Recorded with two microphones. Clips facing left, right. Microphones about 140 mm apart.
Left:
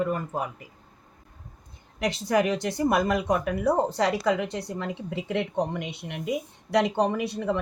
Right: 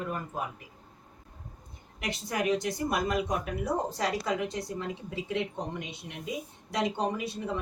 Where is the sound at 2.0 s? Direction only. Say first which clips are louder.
Left 8 dB; 75° left (ahead or behind).